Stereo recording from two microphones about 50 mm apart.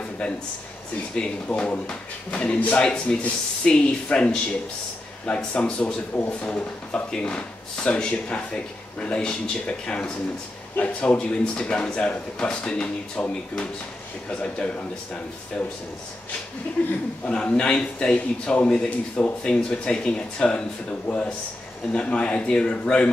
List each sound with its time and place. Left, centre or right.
1.1 s speech: centre
1.5 s speech: left
3.1 s speech: centre
17.3 s speech: left